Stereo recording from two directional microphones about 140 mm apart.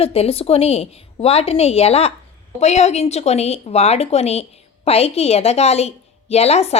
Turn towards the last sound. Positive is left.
turn(degrees=50)  # may be behind; listen again after turning